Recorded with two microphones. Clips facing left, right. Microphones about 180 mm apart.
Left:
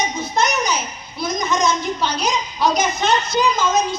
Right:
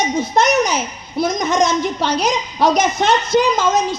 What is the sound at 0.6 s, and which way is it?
A woman's voice, 80° right.